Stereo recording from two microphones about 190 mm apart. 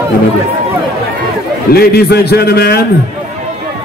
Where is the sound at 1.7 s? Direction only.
55° left (ahead or behind).